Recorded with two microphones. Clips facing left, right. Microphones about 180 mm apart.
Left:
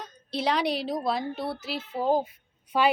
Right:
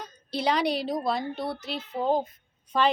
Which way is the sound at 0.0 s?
Centre (ahead or behind).